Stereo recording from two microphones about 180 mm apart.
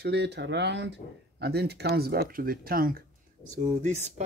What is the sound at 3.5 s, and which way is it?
Speech, 40° right (ahead or behind).